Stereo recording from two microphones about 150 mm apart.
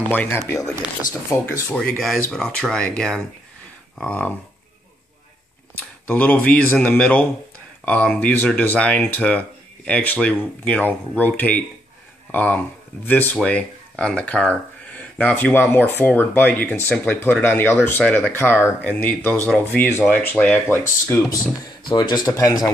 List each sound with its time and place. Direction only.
0.1 s speech: 15° left (ahead or behind)
5.8 s speech: 10° left (ahead or behind)
21.8 s speech: 30° left (ahead or behind)